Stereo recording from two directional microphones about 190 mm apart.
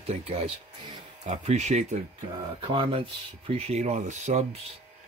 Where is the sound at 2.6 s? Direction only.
25° right (ahead or behind).